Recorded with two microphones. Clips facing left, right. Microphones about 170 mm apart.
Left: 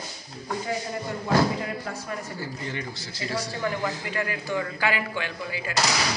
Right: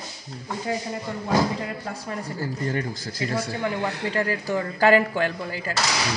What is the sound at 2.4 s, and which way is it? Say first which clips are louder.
Speech: right 6 dB; 45° right (ahead or behind).